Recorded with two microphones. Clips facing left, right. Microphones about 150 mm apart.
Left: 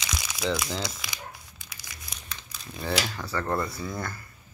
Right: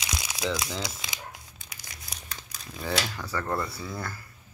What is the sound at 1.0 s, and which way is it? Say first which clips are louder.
Tearing: even; 20° right (ahead or behind).